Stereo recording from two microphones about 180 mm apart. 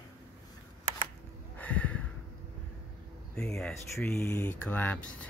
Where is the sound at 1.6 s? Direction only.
10° left (ahead or behind).